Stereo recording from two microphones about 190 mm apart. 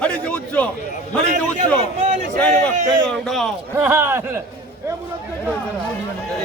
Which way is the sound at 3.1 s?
Centre (ahead or behind).